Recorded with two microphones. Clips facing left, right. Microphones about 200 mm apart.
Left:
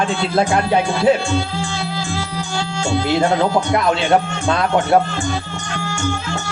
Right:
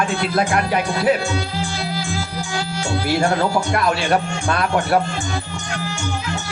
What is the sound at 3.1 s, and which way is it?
Speech, 20° left (ahead or behind).